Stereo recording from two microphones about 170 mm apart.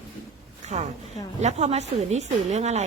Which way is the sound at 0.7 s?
40° right (ahead or behind).